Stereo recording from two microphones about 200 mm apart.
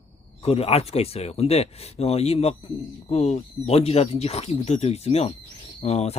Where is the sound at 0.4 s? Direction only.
30° left (ahead or behind).